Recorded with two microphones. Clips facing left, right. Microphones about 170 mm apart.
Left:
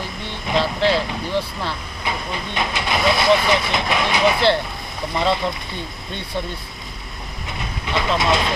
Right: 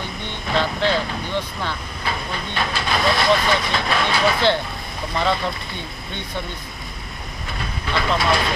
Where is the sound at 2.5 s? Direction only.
15° left (ahead or behind).